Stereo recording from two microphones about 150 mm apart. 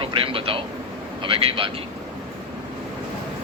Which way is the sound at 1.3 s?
35° right (ahead or behind).